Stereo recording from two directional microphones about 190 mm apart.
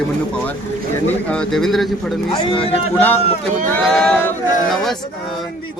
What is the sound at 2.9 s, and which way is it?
Speech, 10° left (ahead or behind).